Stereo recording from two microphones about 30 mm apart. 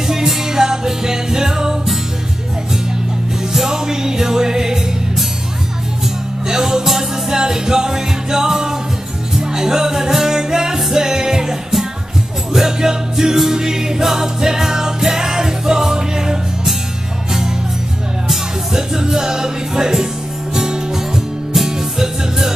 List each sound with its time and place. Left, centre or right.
0.0 s music: centre
3.5 s music: centre
6.4 s music: centre
12.5 s music: centre
18.3 s music: centre